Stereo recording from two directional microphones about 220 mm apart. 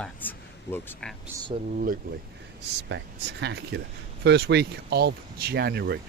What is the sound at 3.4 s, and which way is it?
Speech, 50° right (ahead or behind).